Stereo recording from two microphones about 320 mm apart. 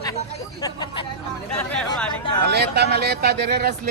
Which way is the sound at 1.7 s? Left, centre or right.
Centre.